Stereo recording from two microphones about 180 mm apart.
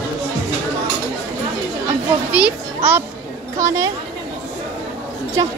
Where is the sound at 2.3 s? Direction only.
10° right (ahead or behind).